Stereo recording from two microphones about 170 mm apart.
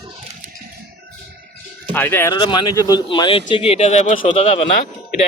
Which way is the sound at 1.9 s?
10° left (ahead or behind).